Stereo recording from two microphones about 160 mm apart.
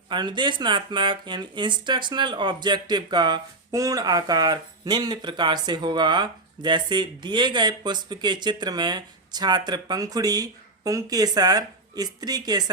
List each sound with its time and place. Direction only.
0.1 s speech: 30° right (ahead or behind)